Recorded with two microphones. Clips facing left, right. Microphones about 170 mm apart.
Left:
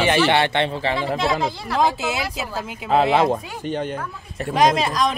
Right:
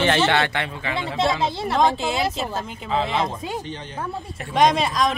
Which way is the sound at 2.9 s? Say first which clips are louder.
Left 6 dB; 60° left (ahead or behind).